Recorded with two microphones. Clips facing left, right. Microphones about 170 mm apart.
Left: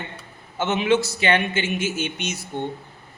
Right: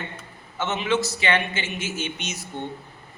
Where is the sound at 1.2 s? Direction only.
50° left (ahead or behind).